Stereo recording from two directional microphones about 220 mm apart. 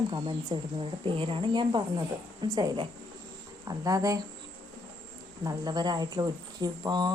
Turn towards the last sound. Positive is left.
turn(degrees=-20)  # may be behind; listen again after turning